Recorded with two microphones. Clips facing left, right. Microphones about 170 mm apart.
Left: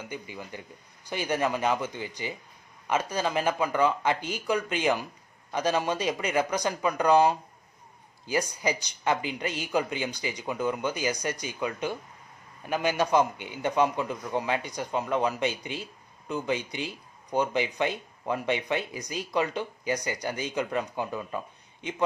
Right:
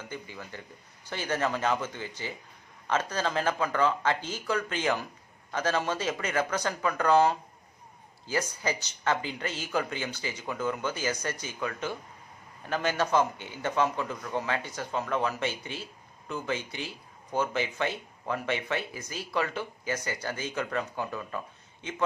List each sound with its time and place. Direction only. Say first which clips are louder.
0.0 s a man's voice: left 2 dB; 15° left (ahead or behind)